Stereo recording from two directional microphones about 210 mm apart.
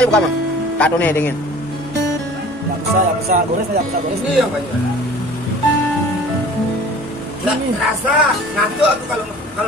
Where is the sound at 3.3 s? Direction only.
40° right (ahead or behind).